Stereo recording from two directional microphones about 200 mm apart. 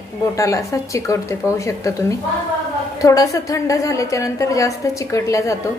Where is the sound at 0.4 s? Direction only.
15° left (ahead or behind).